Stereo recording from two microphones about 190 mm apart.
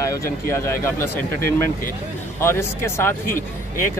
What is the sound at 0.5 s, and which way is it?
A man's voice, 15° left (ahead or behind).